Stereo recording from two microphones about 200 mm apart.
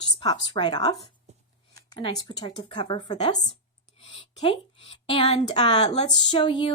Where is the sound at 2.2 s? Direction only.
20° left (ahead or behind).